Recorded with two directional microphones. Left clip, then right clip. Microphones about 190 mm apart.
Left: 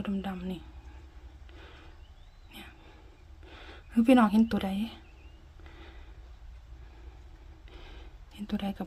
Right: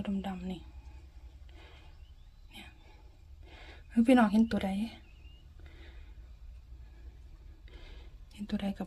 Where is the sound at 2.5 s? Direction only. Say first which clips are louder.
Left 2 dB; 15° left (ahead or behind).